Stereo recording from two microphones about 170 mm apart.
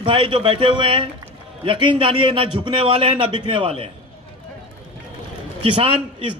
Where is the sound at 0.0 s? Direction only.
30° right (ahead or behind).